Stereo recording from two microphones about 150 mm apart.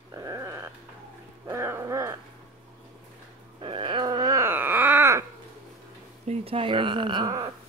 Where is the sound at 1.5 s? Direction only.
15° right (ahead or behind).